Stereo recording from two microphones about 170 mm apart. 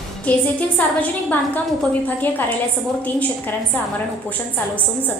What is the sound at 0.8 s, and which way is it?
A woman's voice, 10° left (ahead or behind).